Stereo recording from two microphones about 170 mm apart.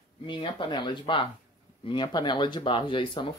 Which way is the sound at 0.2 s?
30° left (ahead or behind).